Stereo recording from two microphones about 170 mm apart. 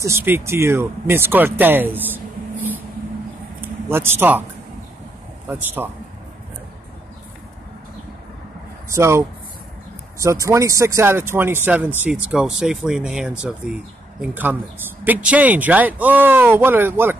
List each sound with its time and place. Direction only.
0.0 s speech: 15° right (ahead or behind)
5.5 s speech: 10° right (ahead or behind)
8.9 s speech: 15° right (ahead or behind)